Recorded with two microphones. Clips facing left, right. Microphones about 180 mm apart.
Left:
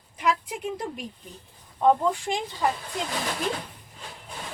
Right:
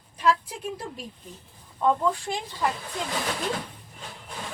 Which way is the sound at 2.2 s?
15° left (ahead or behind).